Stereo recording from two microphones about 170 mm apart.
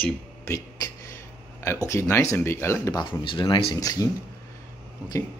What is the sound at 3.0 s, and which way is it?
Speech, 30° left (ahead or behind).